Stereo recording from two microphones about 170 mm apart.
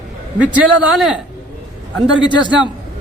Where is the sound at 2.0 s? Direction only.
25° left (ahead or behind).